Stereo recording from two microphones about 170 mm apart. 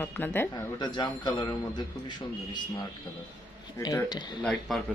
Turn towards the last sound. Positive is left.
turn(degrees=0)  # may be behind; listen again after turning